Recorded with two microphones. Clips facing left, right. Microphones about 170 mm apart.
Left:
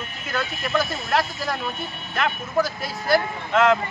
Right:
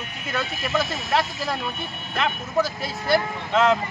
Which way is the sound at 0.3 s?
Centre (ahead or behind).